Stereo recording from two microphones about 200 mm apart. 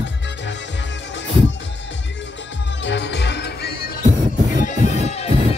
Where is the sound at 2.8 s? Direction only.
60° left (ahead or behind).